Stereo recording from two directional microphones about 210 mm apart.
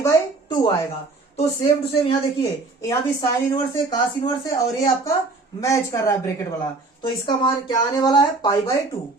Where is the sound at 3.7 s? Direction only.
15° left (ahead or behind).